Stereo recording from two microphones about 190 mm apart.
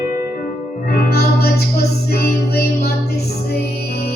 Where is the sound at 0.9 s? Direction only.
55° left (ahead or behind).